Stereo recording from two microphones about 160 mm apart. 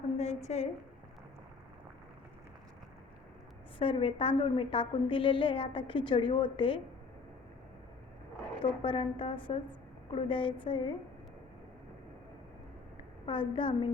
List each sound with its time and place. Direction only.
0.2 s a sound: 45° left (ahead or behind)
3.8 s a woman's voice: 35° left (ahead or behind)
8.6 s a woman's voice: 30° left (ahead or behind)
13.2 s a woman's voice: 30° left (ahead or behind)